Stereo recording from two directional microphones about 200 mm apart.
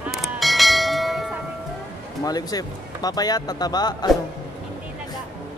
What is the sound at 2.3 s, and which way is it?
Speech, 20° left (ahead or behind).